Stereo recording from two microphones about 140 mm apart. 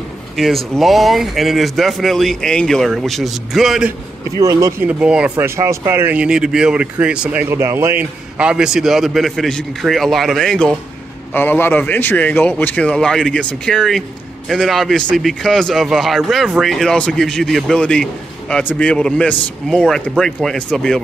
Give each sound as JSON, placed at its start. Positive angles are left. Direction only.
{"t": 0.4, "sound": "speech", "side_deg": 0}
{"t": 4.4, "sound": "speech", "side_deg": -25}
{"t": 4.8, "sound": "speech", "side_deg": -10}
{"t": 5.3, "sound": "speech", "side_deg": -20}
{"t": 11.3, "sound": "a man's voice", "side_deg": 15}